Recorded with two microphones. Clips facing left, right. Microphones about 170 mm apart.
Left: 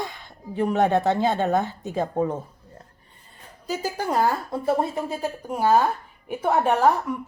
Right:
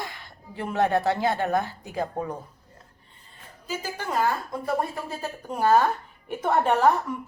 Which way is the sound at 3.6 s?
40° left (ahead or behind).